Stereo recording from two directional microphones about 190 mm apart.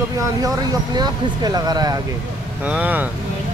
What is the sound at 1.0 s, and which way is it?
Speech, 20° right (ahead or behind).